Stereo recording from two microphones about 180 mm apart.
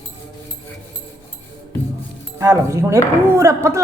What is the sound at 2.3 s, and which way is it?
Speech, 15° right (ahead or behind).